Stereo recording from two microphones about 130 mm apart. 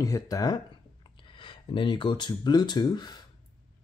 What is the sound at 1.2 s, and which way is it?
Speech, 40° left (ahead or behind).